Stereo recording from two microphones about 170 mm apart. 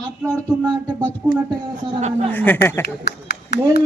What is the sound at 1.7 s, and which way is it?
Speech, 40° right (ahead or behind).